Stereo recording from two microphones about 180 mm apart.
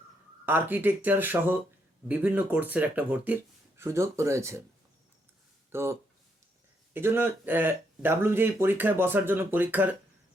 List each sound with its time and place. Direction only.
0.4 s speech: 10° right (ahead or behind)
5.7 s speech: 15° right (ahead or behind)